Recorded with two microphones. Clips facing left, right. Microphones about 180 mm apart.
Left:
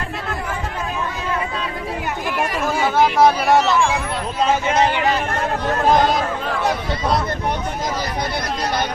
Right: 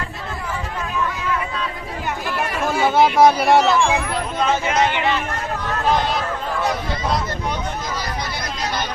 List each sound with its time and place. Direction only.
2.4 s chatter: 10° left (ahead or behind)
2.9 s speech: 10° right (ahead or behind)
4.7 s speech: 35° left (ahead or behind)